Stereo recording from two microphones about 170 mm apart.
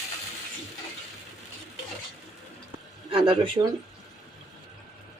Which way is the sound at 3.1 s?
30° right (ahead or behind).